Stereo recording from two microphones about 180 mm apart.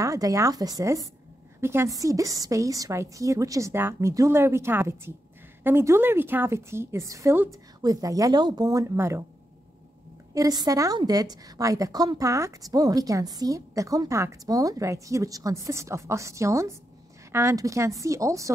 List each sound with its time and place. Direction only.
0.0 s a woman's voice: 20° right (ahead or behind)
10.3 s a woman's voice: 20° right (ahead or behind)